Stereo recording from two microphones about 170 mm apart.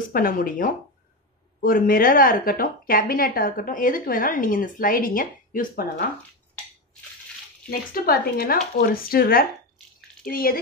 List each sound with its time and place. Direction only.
0.1 s a woman's voice: 55° left (ahead or behind)
7.9 s a woman's voice: 60° left (ahead or behind)